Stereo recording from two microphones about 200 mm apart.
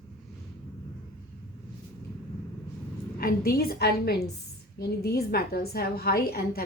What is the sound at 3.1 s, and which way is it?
A woman's voice, 50° left (ahead or behind).